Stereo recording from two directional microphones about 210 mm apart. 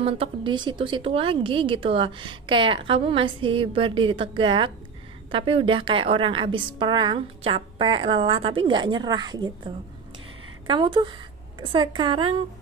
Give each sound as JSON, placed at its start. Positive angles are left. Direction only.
{"t": 0.0, "sound": "a woman's voice", "side_deg": -25}
{"t": 10.7, "sound": "a woman's voice", "side_deg": -20}